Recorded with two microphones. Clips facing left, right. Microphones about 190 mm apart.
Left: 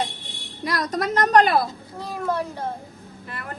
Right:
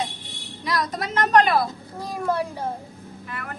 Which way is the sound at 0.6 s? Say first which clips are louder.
Left 2 dB; 45° left (ahead or behind).